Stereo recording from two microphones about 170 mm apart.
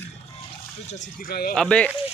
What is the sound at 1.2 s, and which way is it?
Speech, 60° left (ahead or behind).